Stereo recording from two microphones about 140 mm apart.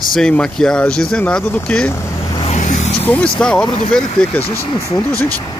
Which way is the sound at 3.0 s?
10° left (ahead or behind).